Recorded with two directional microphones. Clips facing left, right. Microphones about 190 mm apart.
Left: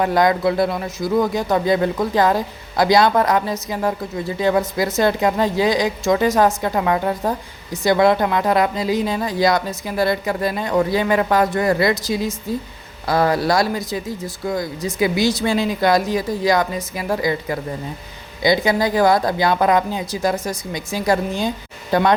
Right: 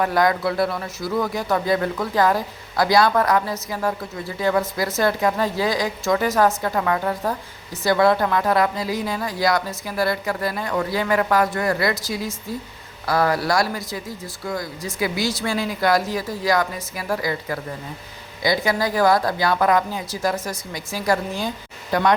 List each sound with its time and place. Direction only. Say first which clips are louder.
0.0 s speech: left 3 dB; 20° left (ahead or behind)